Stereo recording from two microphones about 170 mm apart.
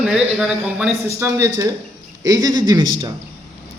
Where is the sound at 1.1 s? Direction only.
15° right (ahead or behind).